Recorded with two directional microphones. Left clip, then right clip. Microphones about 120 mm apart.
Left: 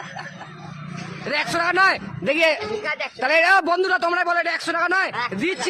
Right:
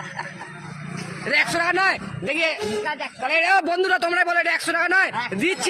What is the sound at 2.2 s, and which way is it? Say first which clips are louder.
A man's voice: left 4 dB; 50° left (ahead or behind).